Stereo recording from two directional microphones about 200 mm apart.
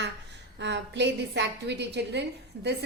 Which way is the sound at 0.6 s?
60° right (ahead or behind).